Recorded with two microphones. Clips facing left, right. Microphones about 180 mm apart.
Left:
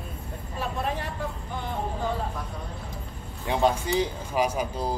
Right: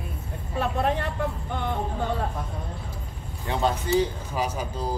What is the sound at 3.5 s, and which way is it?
Speech, 15° left (ahead or behind).